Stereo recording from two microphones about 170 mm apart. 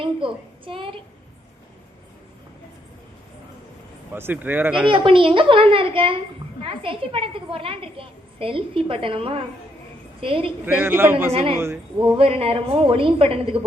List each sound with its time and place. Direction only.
0.0 s a child's voice: 30° right (ahead or behind)
4.1 s speech: 10° right (ahead or behind)
4.9 s a woman's voice: 30° right (ahead or behind)
10.7 s speech: 10° right (ahead or behind)
11.3 s a woman's voice: 35° right (ahead or behind)